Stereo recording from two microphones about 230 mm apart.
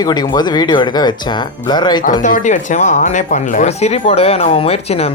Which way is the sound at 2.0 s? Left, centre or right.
Left.